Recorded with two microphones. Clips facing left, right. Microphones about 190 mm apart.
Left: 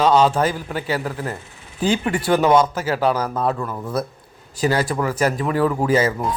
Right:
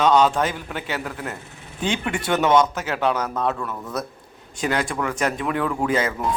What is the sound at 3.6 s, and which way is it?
Speech, 20° left (ahead or behind).